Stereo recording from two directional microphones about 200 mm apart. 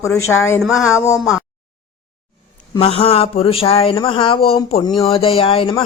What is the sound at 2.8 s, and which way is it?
Speech, 30° left (ahead or behind).